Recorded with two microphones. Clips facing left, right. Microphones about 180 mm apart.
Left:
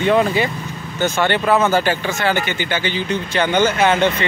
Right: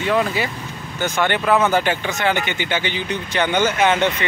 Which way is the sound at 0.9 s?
10° right (ahead or behind).